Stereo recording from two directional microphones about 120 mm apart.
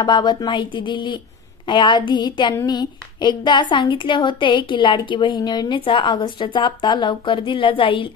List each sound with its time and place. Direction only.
0.0 s a woman's voice: 40° left (ahead or behind)